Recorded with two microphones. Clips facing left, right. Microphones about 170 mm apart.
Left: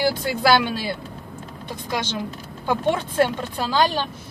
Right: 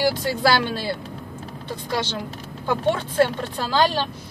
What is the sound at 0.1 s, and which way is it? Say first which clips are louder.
Speech: left 1 dB; 10° left (ahead or behind).